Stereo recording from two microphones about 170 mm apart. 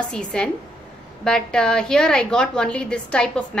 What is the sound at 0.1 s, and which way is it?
A woman's voice, 5° left (ahead or behind).